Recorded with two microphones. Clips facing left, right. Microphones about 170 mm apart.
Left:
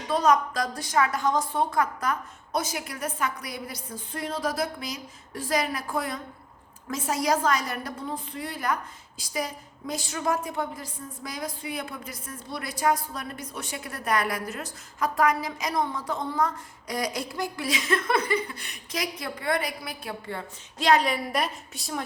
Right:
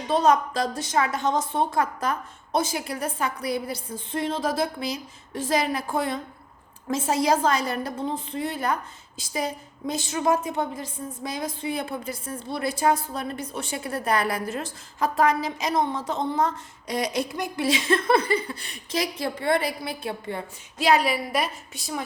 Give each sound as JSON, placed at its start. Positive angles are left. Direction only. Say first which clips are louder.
{"t": 0.1, "sound": "a woman's voice", "louder": "right 2 dB", "side_deg": -25}
{"t": 20.7, "sound": "a woman's voice", "louder": "right 1 dB", "side_deg": -5}